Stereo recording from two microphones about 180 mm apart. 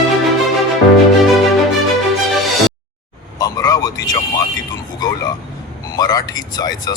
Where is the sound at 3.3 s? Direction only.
20° left (ahead or behind).